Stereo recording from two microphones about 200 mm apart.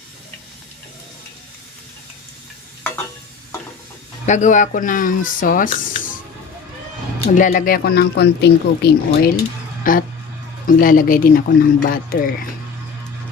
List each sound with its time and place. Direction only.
4.3 s speech: 40° left (ahead or behind)
7.3 s speech: 40° left (ahead or behind)
9.9 s speech: 45° left (ahead or behind)